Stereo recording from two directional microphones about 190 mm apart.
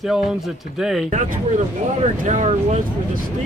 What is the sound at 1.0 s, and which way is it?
Speech, 45° right (ahead or behind).